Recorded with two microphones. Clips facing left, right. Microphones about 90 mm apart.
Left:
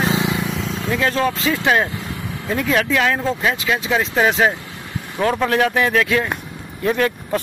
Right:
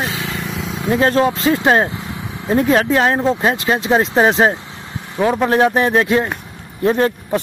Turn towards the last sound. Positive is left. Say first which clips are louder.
# right 3 dB
turn(degrees=-30)  # may be behind; listen again after turning